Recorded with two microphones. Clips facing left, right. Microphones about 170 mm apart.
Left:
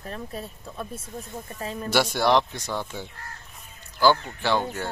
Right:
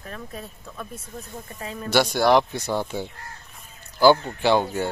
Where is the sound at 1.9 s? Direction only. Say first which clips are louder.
Right 3 dB; centre (ahead or behind).